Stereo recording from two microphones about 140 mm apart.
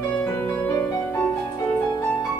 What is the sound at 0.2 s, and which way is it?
Music, 20° left (ahead or behind).